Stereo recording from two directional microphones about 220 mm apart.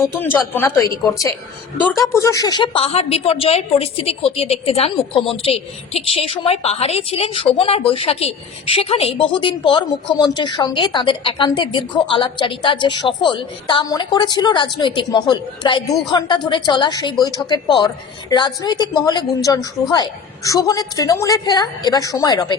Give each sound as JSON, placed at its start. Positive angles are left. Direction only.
{"t": 0.0, "sound": "a woman's voice", "side_deg": 10}